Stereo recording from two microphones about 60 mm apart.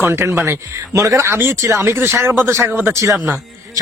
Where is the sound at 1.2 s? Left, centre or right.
Right.